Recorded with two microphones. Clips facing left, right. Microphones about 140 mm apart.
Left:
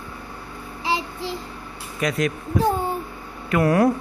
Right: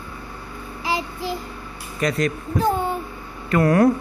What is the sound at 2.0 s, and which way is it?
Speech, 5° left (ahead or behind).